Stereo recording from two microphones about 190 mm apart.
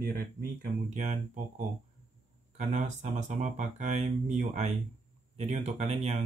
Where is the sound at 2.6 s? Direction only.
35° right (ahead or behind).